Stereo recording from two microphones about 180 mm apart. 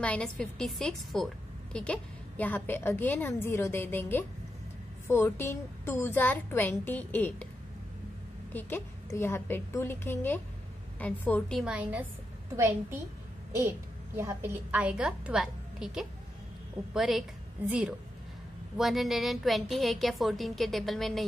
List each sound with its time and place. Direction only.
0.0 s a woman's voice: 5° left (ahead or behind)
8.5 s a woman's voice: 10° left (ahead or behind); by 12.1 s 5° right (ahead or behind)
13.6 s a woman's voice: 15° right (ahead or behind); by 21.2 s centre (ahead or behind)